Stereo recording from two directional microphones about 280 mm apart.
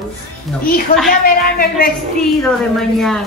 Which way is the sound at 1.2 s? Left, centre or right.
Left.